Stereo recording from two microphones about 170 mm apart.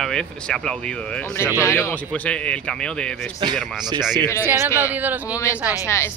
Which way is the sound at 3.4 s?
30° right (ahead or behind).